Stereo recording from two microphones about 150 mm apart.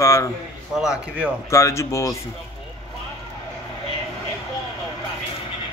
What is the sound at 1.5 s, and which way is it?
Speech, 20° left (ahead or behind).